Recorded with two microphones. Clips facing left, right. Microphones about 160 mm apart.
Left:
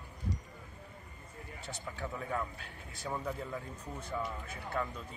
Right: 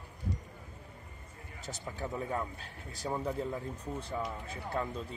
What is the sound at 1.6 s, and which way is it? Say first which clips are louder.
Speech: right 2 dB; 40° right (ahead or behind).